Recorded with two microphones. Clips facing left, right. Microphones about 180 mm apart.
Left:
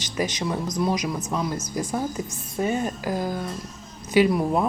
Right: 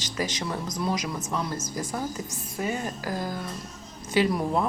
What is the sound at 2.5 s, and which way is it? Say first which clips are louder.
A woman's voice: left 5 dB; 25° left (ahead or behind).